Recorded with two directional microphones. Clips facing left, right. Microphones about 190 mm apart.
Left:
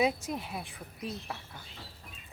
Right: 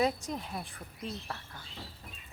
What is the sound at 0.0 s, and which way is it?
Speech, 5° left (ahead or behind).